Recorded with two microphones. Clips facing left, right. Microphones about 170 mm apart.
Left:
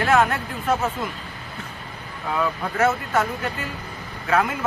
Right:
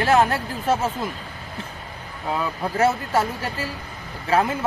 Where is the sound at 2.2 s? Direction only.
25° right (ahead or behind).